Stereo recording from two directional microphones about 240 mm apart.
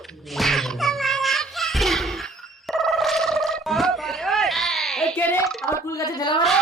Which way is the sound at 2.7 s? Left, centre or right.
Centre.